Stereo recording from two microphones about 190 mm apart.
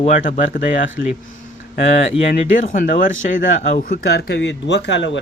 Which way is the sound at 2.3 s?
45° left (ahead or behind).